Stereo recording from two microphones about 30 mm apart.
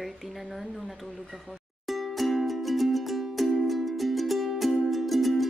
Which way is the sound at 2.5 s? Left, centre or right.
Centre.